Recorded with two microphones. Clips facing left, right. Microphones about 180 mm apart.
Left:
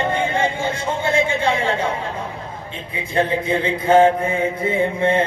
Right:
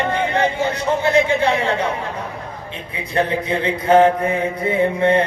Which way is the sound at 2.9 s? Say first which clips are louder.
Even; 25° left (ahead or behind).